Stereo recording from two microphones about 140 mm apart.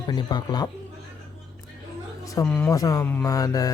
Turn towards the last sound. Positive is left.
turn(degrees=25)  # may be behind; listen again after turning